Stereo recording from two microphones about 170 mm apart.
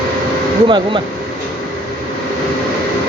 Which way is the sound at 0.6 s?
30° right (ahead or behind).